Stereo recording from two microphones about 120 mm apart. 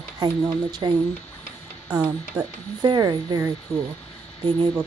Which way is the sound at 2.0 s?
30° right (ahead or behind).